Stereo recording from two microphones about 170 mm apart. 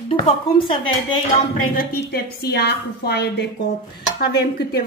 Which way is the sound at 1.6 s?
60° left (ahead or behind).